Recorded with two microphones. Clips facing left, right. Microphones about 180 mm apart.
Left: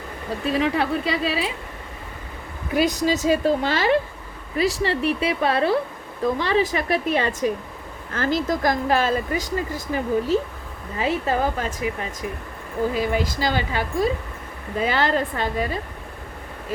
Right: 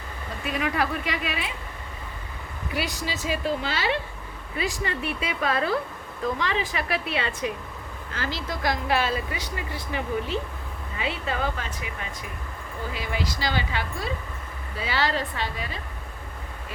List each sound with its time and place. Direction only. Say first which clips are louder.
0.4 s a woman's voice: left 5 dB; 30° left (ahead or behind)
2.7 s a woman's voice: left 10 dB; 40° left (ahead or behind)
4.5 s a woman's voice: left 7 dB; 35° left (ahead or behind)
12.9 s speech: left 8 dB; 45° left (ahead or behind)